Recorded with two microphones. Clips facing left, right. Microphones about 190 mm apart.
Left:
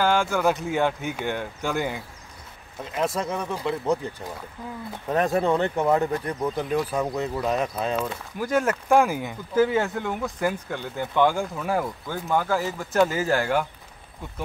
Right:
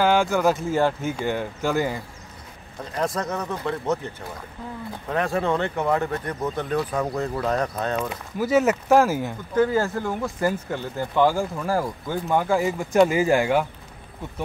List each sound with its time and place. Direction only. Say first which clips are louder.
0.0 s speech: right 2 dB; 10° right (ahead or behind); by 4.0 s 10° left (ahead or behind)
5.1 s speech: left 2 dB; 20° left (ahead or behind)
8.4 s speech: right 4 dB; 5° right (ahead or behind)